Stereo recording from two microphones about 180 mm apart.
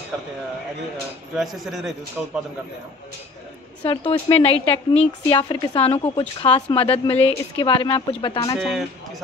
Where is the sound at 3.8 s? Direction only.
30° left (ahead or behind).